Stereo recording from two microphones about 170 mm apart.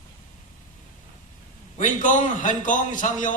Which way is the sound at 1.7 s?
45° left (ahead or behind).